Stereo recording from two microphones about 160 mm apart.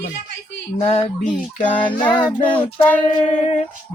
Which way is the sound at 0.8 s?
40° left (ahead or behind).